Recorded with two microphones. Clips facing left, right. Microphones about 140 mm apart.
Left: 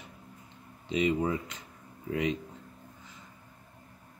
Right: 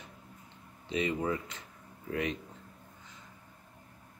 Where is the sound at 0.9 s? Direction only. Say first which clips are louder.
Left 4 dB; 15° left (ahead or behind).